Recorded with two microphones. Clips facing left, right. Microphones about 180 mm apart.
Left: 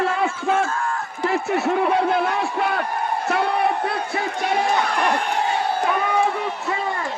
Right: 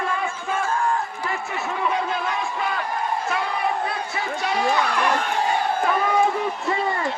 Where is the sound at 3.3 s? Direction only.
65° left (ahead or behind).